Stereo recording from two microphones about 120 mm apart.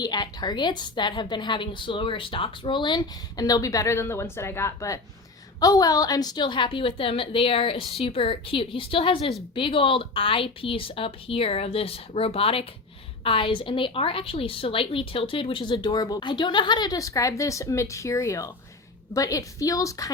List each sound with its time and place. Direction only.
0.0 s a woman's voice: 35° left (ahead or behind)